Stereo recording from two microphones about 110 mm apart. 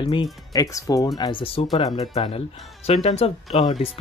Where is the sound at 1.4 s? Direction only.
60° left (ahead or behind).